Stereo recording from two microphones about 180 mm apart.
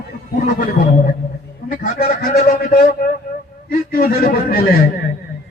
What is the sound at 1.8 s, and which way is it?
Speech, 55° left (ahead or behind).